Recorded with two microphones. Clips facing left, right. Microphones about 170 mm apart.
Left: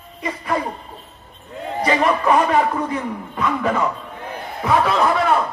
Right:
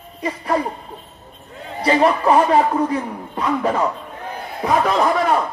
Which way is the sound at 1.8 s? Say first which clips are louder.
Right 2 dB; 35° right (ahead or behind).